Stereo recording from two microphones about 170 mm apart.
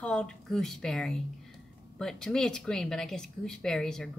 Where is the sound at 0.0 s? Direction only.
5° left (ahead or behind).